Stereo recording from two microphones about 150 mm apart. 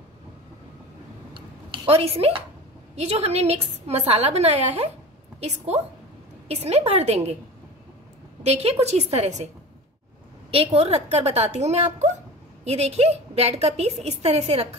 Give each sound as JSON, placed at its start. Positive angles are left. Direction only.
{"t": 1.3, "sound": "a sound", "side_deg": -35}
{"t": 3.0, "sound": "a woman's voice", "side_deg": -45}
{"t": 8.5, "sound": "a woman's voice", "side_deg": -45}
{"t": 10.5, "sound": "a woman's voice", "side_deg": -40}